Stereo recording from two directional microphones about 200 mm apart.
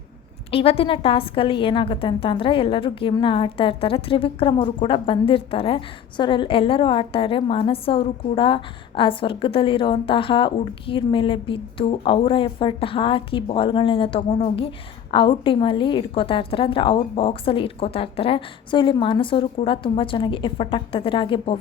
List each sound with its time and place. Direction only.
0.5 s a woman's voice: 30° left (ahead or behind)